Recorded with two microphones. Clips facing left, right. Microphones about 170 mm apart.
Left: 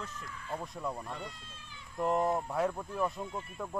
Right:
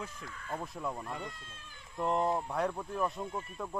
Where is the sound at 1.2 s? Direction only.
50° right (ahead or behind).